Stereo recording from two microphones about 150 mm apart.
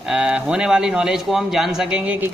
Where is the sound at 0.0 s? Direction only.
5° right (ahead or behind).